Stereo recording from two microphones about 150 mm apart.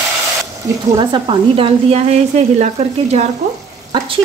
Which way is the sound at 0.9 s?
35° right (ahead or behind).